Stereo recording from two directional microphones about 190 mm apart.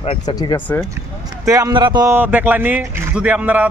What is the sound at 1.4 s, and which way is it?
Speech, 15° right (ahead or behind).